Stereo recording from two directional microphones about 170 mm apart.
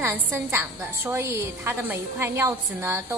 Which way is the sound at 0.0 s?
15° right (ahead or behind).